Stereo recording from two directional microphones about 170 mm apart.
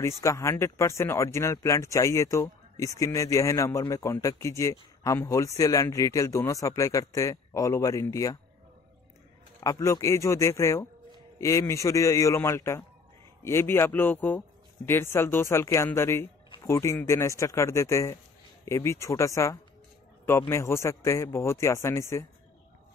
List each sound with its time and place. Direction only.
0.0 s speech: 15° left (ahead or behind)
9.6 s speech: 20° left (ahead or behind)